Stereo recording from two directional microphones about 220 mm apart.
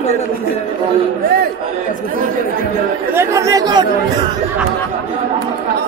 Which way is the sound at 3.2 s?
15° right (ahead or behind).